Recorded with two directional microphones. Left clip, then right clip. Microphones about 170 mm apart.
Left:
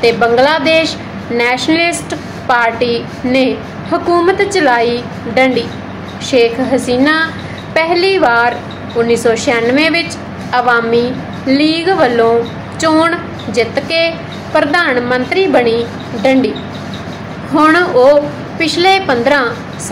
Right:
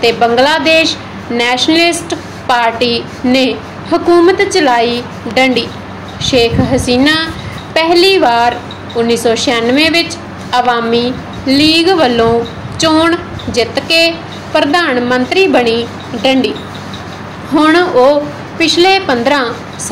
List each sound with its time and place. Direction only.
0.0 s a woman's voice: 25° right (ahead or behind)
17.6 s a woman's voice: 20° right (ahead or behind)